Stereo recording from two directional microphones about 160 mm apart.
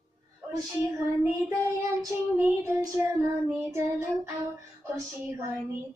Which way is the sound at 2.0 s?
15° right (ahead or behind).